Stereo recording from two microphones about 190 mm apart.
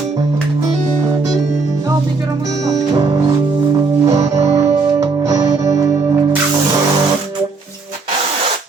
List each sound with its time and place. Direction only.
4.0 s music: 15° right (ahead or behind)